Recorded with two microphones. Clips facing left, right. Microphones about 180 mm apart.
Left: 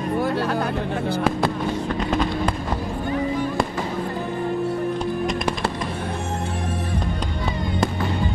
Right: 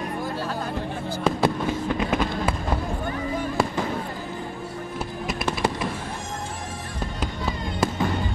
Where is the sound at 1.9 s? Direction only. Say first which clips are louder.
Left 2 dB; 10° right (ahead or behind).